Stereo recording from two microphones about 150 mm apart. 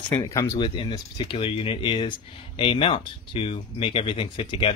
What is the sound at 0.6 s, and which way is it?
Speech, 30° left (ahead or behind).